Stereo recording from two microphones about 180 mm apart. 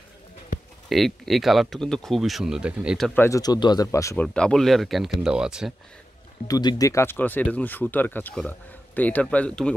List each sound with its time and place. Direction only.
0.8 s speech: centre (ahead or behind)
3.2 s speech: 20° left (ahead or behind)
4.3 s speech: 5° left (ahead or behind)
6.4 s speech: 20° left (ahead or behind)